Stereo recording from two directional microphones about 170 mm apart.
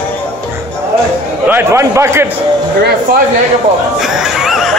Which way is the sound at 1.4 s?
15° right (ahead or behind).